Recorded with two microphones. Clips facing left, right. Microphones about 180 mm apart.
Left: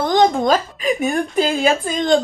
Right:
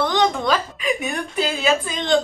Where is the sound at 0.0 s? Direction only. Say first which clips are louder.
Left 4 dB; 45° left (ahead or behind).